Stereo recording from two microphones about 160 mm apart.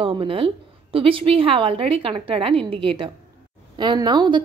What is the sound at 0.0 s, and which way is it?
A woman's voice, 30° right (ahead or behind).